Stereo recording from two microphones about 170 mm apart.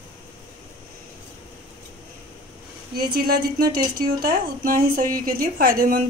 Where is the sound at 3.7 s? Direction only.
60° right (ahead or behind).